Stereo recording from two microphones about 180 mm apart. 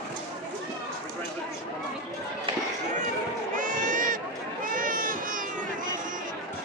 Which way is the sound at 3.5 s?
45° right (ahead or behind).